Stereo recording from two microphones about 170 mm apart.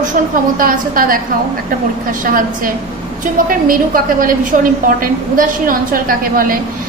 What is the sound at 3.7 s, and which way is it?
A woman's voice, 55° right (ahead or behind).